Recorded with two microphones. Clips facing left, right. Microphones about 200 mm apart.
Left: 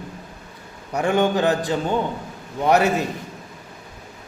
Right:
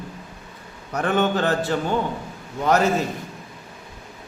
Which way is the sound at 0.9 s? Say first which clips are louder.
Left 2 dB; 15° left (ahead or behind).